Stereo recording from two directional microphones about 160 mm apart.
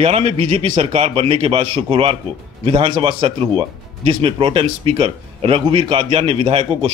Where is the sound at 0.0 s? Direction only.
40° right (ahead or behind).